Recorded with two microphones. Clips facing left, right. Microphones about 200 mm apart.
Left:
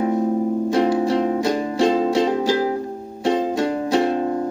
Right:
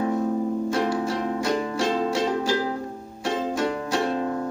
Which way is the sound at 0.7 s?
25° left (ahead or behind).